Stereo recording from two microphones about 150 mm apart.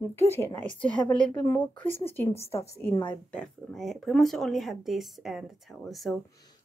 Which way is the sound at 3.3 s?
5° left (ahead or behind).